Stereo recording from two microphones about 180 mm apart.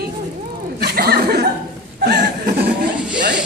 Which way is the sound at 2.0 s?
65° right (ahead or behind).